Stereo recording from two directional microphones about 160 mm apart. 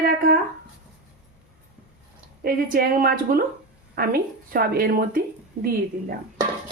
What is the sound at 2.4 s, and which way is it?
A woman's voice, 65° right (ahead or behind).